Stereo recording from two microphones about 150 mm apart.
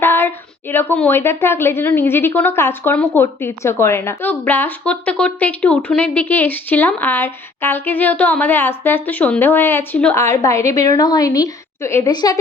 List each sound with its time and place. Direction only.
0.0 s a woman's voice: 15° left (ahead or behind)